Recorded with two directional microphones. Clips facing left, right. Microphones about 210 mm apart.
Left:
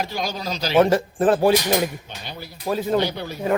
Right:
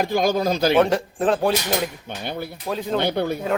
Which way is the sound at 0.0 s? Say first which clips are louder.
Right 7 dB; 50° right (ahead or behind).